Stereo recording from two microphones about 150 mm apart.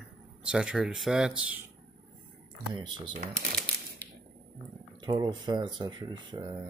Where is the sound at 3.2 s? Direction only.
90° right.